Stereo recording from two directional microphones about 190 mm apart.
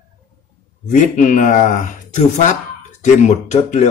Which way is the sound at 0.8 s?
45° left (ahead or behind).